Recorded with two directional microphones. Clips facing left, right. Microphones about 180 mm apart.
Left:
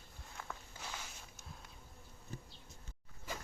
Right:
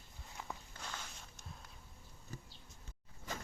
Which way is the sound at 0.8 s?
10° left (ahead or behind).